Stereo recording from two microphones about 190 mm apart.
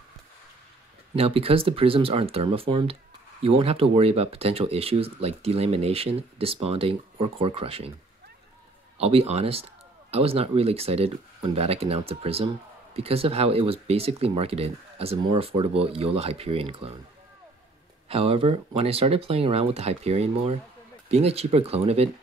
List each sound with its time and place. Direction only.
1.1 s speech: 30° right (ahead or behind)
8.9 s speech: 30° right (ahead or behind)
18.0 s speech: 30° right (ahead or behind)